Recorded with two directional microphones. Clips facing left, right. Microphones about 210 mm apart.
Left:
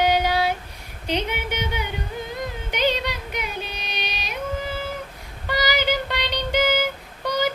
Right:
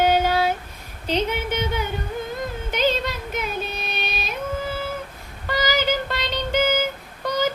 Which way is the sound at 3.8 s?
45° right (ahead or behind).